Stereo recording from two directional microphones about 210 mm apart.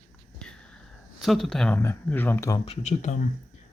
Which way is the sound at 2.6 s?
30° left (ahead or behind).